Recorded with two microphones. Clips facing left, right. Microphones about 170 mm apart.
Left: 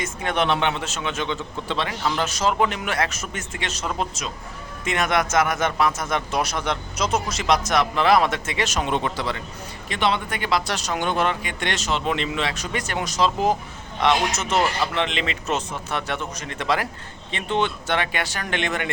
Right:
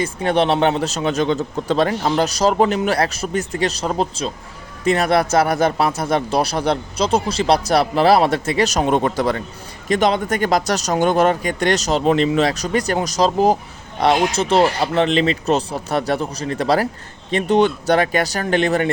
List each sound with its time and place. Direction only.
0.0 s speech: 30° right (ahead or behind)